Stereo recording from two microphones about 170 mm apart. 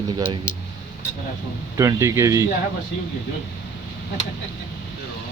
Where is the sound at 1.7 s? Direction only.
20° right (ahead or behind).